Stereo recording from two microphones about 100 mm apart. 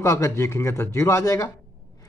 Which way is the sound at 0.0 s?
30° left (ahead or behind).